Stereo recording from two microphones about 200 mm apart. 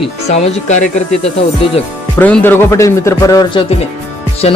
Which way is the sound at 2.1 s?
10° left (ahead or behind).